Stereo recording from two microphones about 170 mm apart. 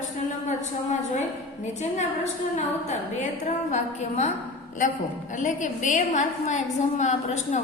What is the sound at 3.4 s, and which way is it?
Speech, 40° left (ahead or behind).